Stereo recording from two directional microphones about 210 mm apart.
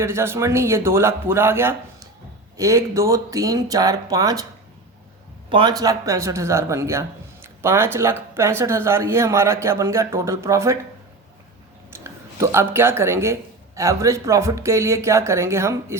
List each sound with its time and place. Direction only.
0.0 s speech: 10° right (ahead or behind)
5.5 s speech: 20° right (ahead or behind)
11.9 s speech: 10° right (ahead or behind)